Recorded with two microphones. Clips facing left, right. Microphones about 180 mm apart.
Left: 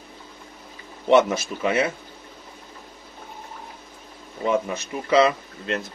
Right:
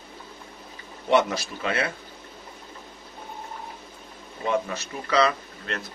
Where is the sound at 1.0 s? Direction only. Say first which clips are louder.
Left 4 dB; 20° left (ahead or behind).